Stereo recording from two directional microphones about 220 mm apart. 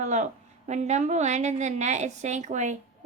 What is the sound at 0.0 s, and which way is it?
A woman's voice, 30° right (ahead or behind).